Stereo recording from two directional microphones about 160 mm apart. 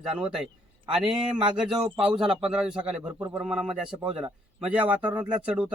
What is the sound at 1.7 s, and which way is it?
A man's voice, 5° right (ahead or behind).